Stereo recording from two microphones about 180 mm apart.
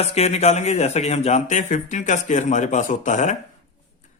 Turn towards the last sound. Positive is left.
turn(degrees=40)  # may be behind; listen again after turning